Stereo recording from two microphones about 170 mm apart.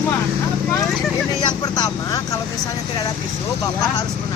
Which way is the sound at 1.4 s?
25° left (ahead or behind).